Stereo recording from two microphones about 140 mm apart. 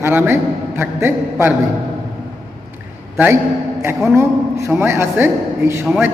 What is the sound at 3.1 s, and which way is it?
Speech, 20° right (ahead or behind).